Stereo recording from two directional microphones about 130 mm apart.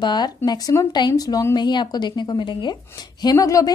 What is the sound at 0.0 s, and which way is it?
Speech, 35° left (ahead or behind).